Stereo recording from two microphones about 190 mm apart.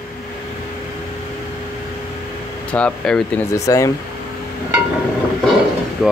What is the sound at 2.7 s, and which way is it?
Speech, 5° left (ahead or behind).